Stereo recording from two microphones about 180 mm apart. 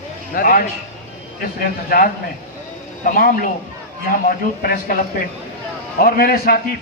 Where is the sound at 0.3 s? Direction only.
50° left (ahead or behind).